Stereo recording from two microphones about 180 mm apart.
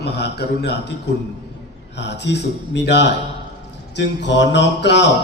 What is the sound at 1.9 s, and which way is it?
A man's voice, 70° left (ahead or behind).